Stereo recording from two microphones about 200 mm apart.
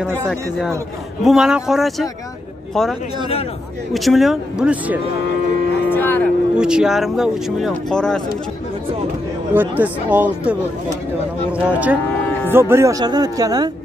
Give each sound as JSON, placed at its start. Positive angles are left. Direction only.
{"t": 0.0, "sound": "speech", "side_deg": 0}
{"t": 5.9, "sound": "livestock", "side_deg": 10}
{"t": 6.5, "sound": "speech", "side_deg": -5}
{"t": 9.5, "sound": "speech", "side_deg": -10}